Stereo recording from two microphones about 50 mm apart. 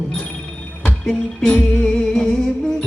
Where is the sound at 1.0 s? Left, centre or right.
Centre.